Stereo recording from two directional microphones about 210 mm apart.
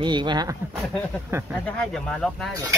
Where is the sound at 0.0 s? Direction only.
20° right (ahead or behind).